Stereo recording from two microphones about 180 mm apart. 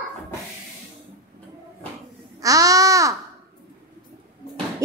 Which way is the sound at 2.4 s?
20° right (ahead or behind).